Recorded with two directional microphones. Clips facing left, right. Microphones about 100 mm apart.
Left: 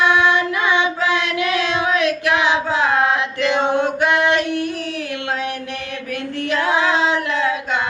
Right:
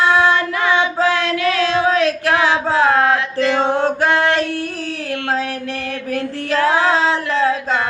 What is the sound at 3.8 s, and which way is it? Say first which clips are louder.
Male singing: right 2 dB; 35° right (ahead or behind).